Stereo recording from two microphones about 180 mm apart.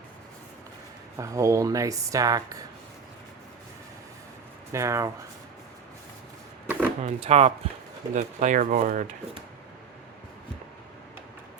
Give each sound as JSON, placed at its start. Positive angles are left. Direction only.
{"t": 1.2, "sound": "speech", "side_deg": -15}
{"t": 4.7, "sound": "speech", "side_deg": -15}
{"t": 6.7, "sound": "a sound", "side_deg": -10}
{"t": 7.0, "sound": "speech", "side_deg": -35}